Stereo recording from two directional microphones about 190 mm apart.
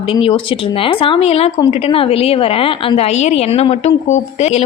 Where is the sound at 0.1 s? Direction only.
30° left (ahead or behind).